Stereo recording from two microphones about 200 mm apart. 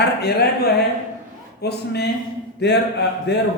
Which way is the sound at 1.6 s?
55° left (ahead or behind).